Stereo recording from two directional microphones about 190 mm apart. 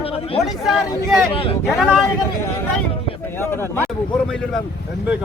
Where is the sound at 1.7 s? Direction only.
Centre (ahead or behind).